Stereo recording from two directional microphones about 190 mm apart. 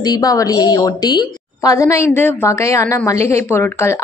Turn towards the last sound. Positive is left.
turn(degrees=15)  # may be behind; listen again after turning